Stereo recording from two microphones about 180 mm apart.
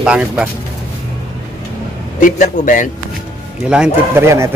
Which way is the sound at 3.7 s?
5° right (ahead or behind).